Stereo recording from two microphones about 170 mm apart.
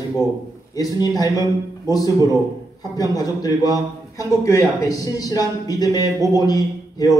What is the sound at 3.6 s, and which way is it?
Speech, 20° right (ahead or behind).